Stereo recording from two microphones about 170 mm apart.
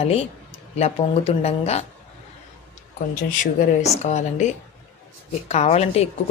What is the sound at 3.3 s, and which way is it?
Speech, 45° left (ahead or behind).